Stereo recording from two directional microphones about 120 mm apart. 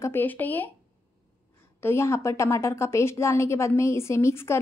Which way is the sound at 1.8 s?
20° left (ahead or behind).